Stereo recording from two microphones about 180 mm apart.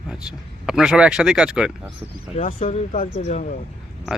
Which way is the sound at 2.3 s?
40° left (ahead or behind).